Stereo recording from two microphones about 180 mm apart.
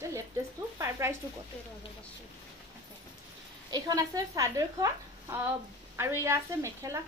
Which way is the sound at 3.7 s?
20° right (ahead or behind).